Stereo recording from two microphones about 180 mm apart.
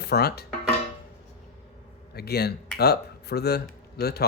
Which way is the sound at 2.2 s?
60° left (ahead or behind).